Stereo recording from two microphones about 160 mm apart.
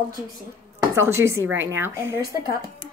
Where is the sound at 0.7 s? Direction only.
15° right (ahead or behind).